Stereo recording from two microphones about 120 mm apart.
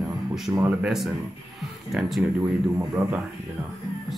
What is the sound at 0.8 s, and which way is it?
Speech, 5° right (ahead or behind).